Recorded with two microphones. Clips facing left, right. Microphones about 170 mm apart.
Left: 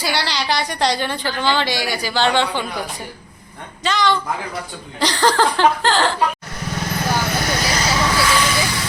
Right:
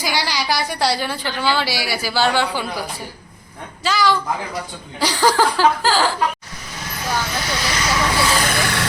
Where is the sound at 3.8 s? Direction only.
5° right (ahead or behind).